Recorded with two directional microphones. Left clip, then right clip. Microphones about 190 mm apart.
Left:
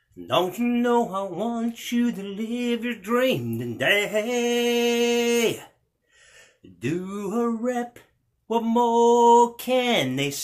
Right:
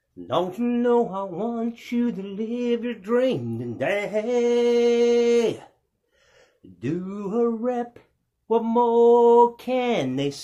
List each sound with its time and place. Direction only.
0.3 s speech: 25° left (ahead or behind)
6.3 s a sound: 25° left (ahead or behind)
8.5 s speech: 15° left (ahead or behind)